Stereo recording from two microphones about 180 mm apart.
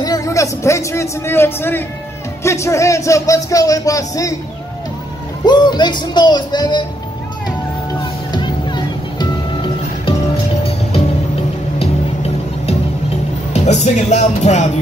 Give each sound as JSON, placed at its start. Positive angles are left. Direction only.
{"t": 0.0, "sound": "a man's voice", "side_deg": 20}
{"t": 5.4, "sound": "speech", "side_deg": 25}
{"t": 8.0, "sound": "music", "side_deg": 25}
{"t": 13.5, "sound": "speech", "side_deg": 40}